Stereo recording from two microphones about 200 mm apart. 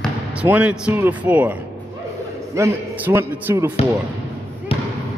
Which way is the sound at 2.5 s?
15° right (ahead or behind).